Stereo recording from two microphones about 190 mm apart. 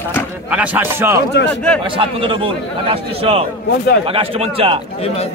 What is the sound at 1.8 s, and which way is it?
A man's voice, 25° right (ahead or behind).